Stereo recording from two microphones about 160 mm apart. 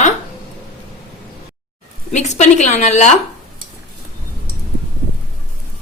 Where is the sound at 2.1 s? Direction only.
45° left (ahead or behind).